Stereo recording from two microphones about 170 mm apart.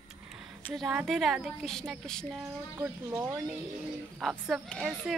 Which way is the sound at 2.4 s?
15° right (ahead or behind).